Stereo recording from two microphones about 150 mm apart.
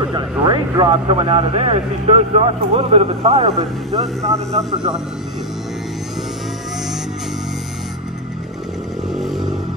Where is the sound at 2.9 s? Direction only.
40° right (ahead or behind).